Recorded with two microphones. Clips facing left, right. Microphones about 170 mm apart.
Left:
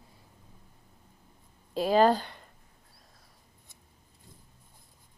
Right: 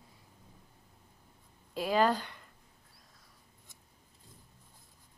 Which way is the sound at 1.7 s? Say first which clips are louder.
Left 5 dB; 30° left (ahead or behind).